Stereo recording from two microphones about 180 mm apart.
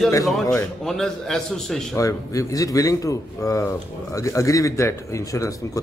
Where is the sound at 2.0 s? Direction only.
20° left (ahead or behind).